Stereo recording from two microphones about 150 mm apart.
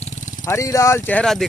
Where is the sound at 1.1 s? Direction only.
5° left (ahead or behind).